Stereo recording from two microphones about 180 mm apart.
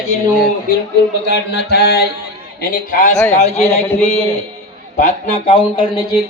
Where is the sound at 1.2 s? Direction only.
65° left (ahead or behind).